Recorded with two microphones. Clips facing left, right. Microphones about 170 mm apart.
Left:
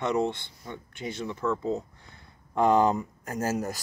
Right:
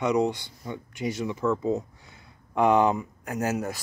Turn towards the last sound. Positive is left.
turn(degrees=0)  # may be behind; listen again after turning